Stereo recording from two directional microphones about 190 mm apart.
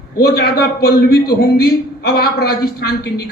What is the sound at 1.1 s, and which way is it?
Speech, 20° left (ahead or behind).